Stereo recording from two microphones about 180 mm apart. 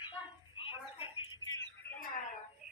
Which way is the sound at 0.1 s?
30° left (ahead or behind).